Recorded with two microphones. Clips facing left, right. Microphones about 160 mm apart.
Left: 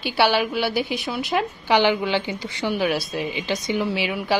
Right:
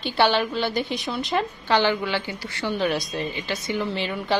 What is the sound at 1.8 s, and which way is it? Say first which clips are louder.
A woman's voice: left 3 dB; 15° left (ahead or behind).